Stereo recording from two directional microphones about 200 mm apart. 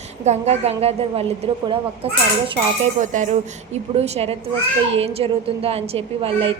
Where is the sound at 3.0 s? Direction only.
40° right (ahead or behind).